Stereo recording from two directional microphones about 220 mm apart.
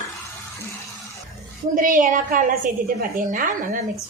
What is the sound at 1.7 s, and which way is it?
A woman's voice, 35° right (ahead or behind).